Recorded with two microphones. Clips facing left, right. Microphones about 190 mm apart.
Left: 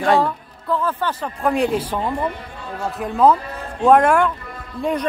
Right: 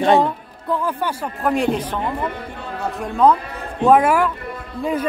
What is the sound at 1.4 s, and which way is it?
Speech, centre (ahead or behind).